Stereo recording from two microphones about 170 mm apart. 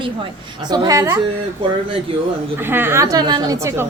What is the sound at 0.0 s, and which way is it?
A woman's voice, 25° right (ahead or behind).